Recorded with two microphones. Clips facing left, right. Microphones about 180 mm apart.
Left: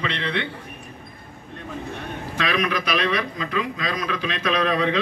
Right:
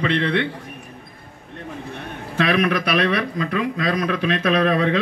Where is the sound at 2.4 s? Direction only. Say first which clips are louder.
Right 5 dB; 55° right (ahead or behind).